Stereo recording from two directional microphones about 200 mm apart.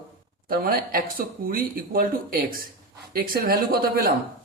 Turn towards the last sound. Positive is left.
turn(degrees=-45)  # may be behind; listen again after turning